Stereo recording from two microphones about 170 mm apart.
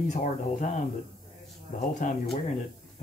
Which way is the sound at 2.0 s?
50° left (ahead or behind).